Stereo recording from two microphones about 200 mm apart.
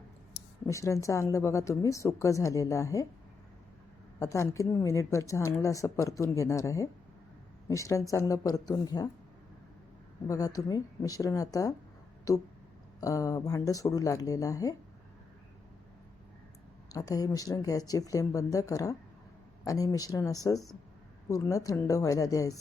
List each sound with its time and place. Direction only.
0.7 s a woman's voice: 15° left (ahead or behind)
4.2 s a woman's voice: 15° left (ahead or behind)
10.2 s a woman's voice: 15° left (ahead or behind)
16.9 s a woman's voice: 15° left (ahead or behind)